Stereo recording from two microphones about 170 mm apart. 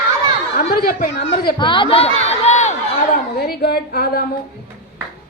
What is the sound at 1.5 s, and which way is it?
Speech, 30° left (ahead or behind).